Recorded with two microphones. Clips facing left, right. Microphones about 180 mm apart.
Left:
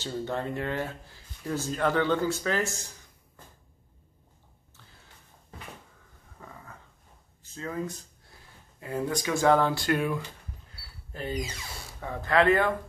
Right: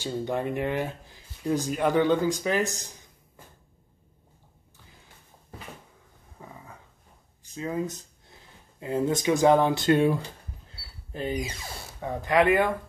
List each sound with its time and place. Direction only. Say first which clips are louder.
0.0 s speech: right 3 dB; 15° right (ahead or behind)
3.4 s cupboard open or close: right 1 dB; 10° right (ahead or behind)
6.4 s dog: right 2 dB; 15° right (ahead or behind)
7.4 s speech: right 4 dB; 15° right (ahead or behind)
10.7 s a sound: right 4 dB; 20° right (ahead or behind)
12.0 s speech: right 2 dB; 15° right (ahead or behind)